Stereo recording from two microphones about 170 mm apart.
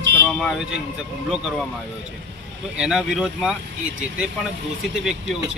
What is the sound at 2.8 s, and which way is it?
Speech, 5° right (ahead or behind).